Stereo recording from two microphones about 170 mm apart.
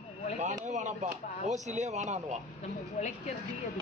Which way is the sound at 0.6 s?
45° right (ahead or behind).